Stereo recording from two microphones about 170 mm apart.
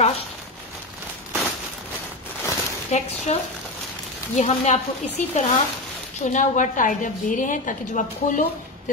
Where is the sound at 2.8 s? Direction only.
40° left (ahead or behind).